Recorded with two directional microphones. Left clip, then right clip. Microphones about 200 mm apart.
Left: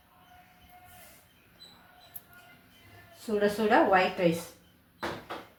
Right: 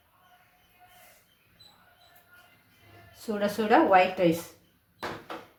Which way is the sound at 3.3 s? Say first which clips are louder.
Right 1 dB; 35° right (ahead or behind).